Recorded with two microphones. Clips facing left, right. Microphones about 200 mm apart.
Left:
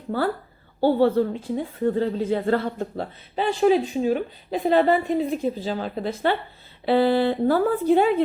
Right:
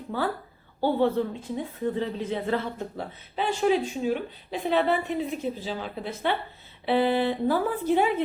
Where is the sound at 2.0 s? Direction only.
40° left (ahead or behind).